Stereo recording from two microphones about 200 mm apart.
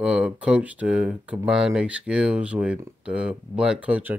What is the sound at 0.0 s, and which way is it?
Speech, 5° right (ahead or behind).